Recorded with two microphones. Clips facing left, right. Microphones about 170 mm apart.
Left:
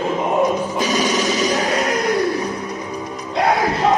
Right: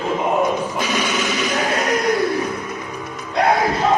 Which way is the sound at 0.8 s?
40° left (ahead or behind).